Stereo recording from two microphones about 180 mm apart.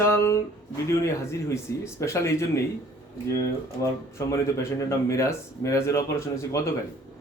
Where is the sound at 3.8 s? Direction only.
15° left (ahead or behind).